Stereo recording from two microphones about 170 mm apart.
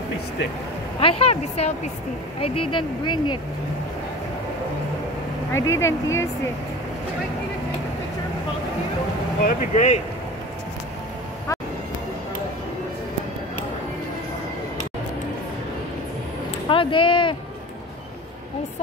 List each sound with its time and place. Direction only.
0.9 s speech: 35° left (ahead or behind)
5.5 s speech: 15° left (ahead or behind)
9.4 s speech: 50° left (ahead or behind)
16.6 s a sound: 30° left (ahead or behind)